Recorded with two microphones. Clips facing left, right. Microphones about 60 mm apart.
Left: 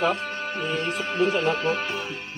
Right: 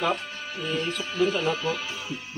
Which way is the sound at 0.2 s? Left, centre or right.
Left.